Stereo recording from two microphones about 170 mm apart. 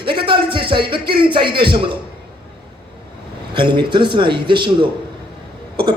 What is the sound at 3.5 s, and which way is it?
A man's voice, 30° right (ahead or behind).